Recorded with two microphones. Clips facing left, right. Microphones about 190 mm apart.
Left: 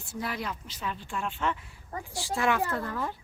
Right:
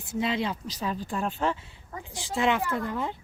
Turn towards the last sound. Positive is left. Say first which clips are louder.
# right 2 dB
turn(degrees=-20)  # may be behind; listen again after turning